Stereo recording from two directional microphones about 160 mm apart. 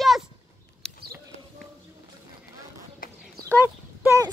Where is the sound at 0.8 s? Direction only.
5° left (ahead or behind).